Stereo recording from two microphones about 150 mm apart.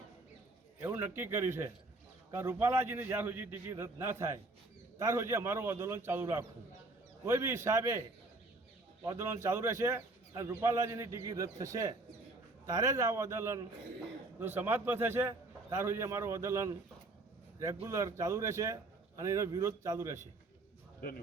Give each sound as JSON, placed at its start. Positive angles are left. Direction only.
{"t": 0.8, "sound": "a man's voice", "side_deg": -15}
{"t": 9.0, "sound": "a man's voice", "side_deg": -15}
{"t": 17.8, "sound": "speech", "side_deg": -20}